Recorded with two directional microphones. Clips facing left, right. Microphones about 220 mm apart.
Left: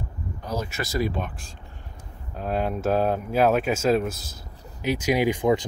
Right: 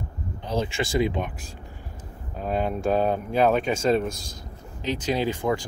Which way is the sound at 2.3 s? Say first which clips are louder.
Even; centre (ahead or behind).